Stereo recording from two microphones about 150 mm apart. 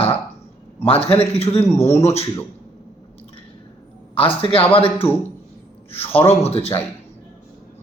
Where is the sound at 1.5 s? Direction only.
20° left (ahead or behind).